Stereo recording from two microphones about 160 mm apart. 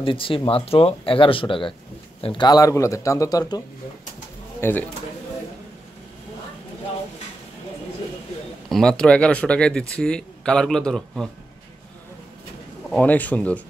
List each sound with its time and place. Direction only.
0.0 s a man's voice: 35° left (ahead or behind)
4.6 s speech: 15° left (ahead or behind)
8.6 s speech: 5° left (ahead or behind)
12.9 s a man's voice: 10° left (ahead or behind)